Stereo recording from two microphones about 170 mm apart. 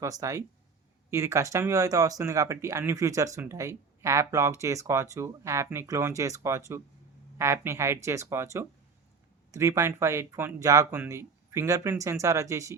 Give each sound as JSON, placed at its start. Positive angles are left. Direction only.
{"t": 0.0, "sound": "speech", "side_deg": -20}